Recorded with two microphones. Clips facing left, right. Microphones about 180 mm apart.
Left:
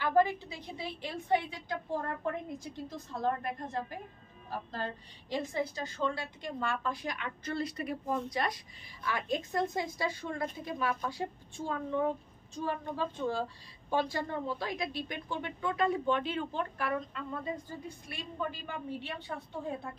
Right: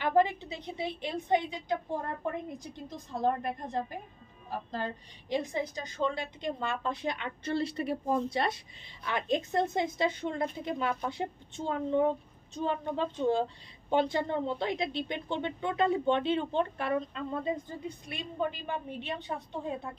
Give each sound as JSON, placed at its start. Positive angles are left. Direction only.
{"t": 0.0, "sound": "a woman's voice", "side_deg": -20}
{"t": 5.3, "sound": "a woman's voice", "side_deg": -20}